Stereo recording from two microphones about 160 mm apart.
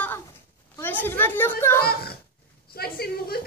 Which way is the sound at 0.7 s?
15° left (ahead or behind).